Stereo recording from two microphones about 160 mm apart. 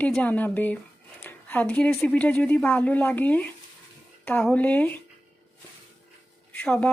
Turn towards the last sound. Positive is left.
turn(degrees=5)  # may be behind; listen again after turning